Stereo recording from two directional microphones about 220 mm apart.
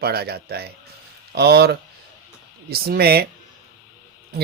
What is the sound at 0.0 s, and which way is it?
Speech, 45° right (ahead or behind).